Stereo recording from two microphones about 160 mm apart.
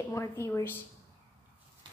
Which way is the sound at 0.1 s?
15° left (ahead or behind).